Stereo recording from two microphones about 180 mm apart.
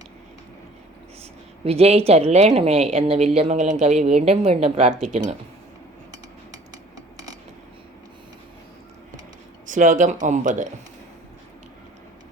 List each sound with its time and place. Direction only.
1.2 s a woman's voice: 35° right (ahead or behind)
9.6 s speech: 45° right (ahead or behind)